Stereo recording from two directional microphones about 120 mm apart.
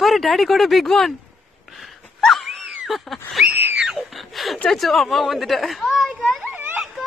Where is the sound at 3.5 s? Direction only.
15° right (ahead or behind).